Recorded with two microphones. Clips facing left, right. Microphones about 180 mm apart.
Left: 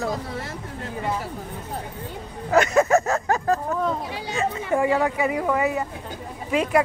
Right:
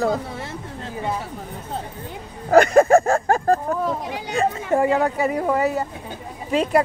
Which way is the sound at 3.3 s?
50° right (ahead or behind).